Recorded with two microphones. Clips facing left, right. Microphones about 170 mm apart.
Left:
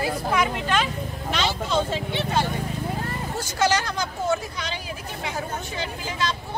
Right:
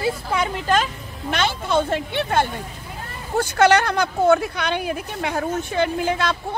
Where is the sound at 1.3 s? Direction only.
55° right (ahead or behind).